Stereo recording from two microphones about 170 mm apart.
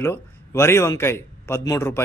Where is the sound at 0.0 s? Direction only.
15° left (ahead or behind).